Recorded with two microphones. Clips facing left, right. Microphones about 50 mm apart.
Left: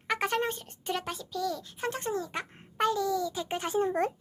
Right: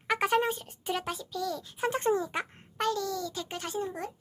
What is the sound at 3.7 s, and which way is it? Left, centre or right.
Speech, left.